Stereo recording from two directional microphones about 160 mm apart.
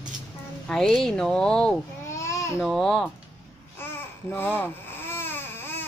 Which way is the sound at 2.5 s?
5° right (ahead or behind).